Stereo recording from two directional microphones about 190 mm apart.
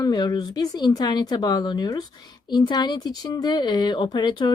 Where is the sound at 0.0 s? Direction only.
20° left (ahead or behind).